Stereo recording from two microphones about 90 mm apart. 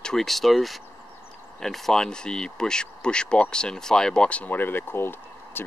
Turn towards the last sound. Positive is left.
turn(degrees=25)  # may be behind; listen again after turning